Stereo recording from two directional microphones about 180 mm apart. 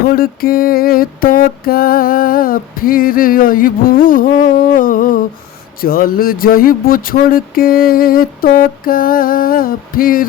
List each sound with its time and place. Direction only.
0.1 s mantra: 55° left (ahead or behind)